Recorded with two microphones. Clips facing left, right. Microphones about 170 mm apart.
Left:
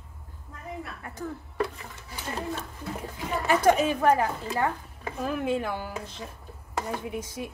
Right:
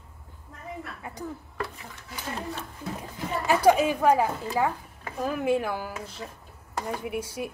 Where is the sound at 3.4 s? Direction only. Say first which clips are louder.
Right 1 dB; 10° right (ahead or behind).